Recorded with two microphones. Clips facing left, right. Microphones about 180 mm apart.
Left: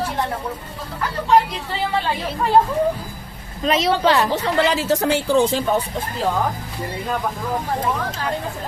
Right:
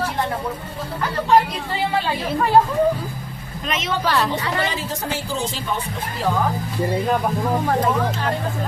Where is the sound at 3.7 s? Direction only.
35° left (ahead or behind).